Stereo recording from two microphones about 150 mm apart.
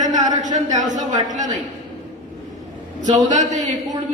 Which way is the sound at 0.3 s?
55° right (ahead or behind).